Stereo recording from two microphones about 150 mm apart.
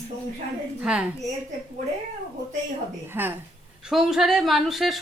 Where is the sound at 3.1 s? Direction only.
15° right (ahead or behind).